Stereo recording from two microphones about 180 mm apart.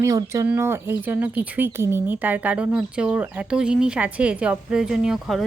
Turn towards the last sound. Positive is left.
turn(degrees=0)  # may be behind; listen again after turning